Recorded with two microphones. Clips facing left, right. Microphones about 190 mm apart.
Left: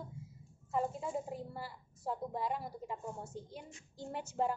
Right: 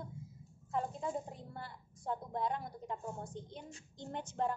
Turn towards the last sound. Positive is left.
turn(degrees=5)  # may be behind; listen again after turning